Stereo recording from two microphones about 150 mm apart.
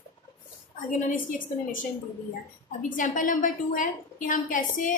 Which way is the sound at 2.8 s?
60° left (ahead or behind).